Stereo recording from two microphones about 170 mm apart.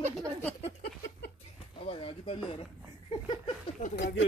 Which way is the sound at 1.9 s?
30° left (ahead or behind).